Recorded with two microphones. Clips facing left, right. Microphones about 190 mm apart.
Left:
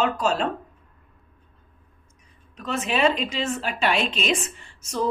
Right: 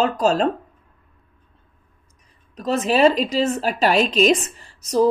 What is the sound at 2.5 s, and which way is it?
Speech, 35° right (ahead or behind).